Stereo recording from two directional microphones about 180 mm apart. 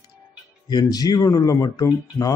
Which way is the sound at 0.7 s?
20° left (ahead or behind).